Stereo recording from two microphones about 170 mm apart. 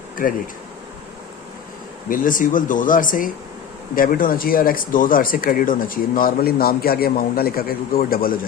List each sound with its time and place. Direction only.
0.2 s speech: 55° left (ahead or behind)
2.0 s speech: 55° left (ahead or behind)